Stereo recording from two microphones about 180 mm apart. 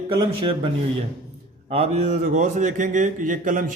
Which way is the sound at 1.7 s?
35° right (ahead or behind).